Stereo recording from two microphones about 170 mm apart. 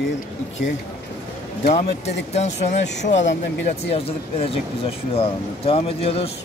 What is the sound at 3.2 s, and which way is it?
Speech, 90° left.